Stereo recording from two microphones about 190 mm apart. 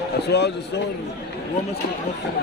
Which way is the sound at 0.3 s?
60° left (ahead or behind).